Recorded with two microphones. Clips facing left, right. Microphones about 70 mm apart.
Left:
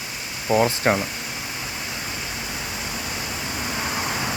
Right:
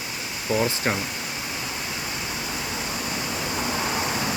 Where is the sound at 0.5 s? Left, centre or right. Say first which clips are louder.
Left 5 dB; left.